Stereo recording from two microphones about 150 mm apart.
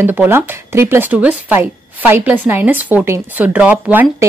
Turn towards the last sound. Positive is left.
turn(degrees=-10)  # may be behind; listen again after turning